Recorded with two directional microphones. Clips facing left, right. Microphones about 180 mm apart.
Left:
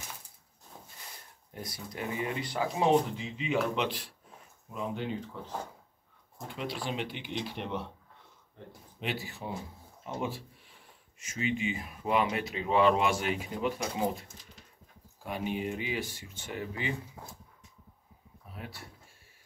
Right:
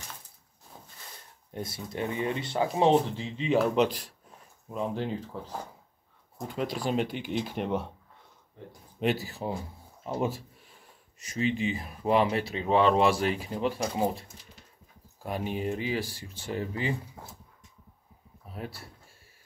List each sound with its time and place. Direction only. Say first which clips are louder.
0.7 s a sound: even; centre (ahead or behind)
1.5 s speech: right 6 dB; 25° right (ahead or behind)
6.5 s speech: right 6 dB; 45° right (ahead or behind)
9.0 s speech: right 8 dB; 40° right (ahead or behind)
18.5 s speech: right 5 dB; 40° right (ahead or behind)